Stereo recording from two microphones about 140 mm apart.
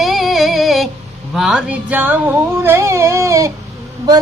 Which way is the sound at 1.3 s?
5° right (ahead or behind).